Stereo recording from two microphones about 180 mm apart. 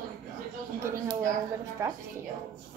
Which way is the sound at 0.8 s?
20° right (ahead or behind).